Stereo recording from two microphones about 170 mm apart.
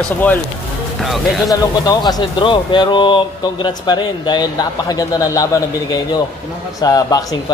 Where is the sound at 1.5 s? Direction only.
25° left (ahead or behind).